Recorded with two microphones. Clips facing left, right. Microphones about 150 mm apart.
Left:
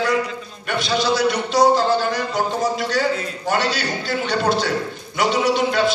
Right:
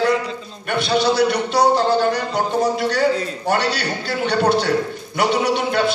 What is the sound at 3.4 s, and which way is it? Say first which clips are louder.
A man's voice: right 1 dB; 60° right (ahead or behind).